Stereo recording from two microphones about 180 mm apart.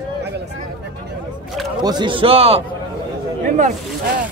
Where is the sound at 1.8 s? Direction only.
25° right (ahead or behind).